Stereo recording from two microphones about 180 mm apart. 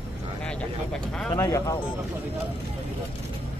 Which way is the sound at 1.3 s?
15° left (ahead or behind).